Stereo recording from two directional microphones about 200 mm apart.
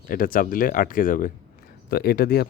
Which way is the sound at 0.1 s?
45° left (ahead or behind).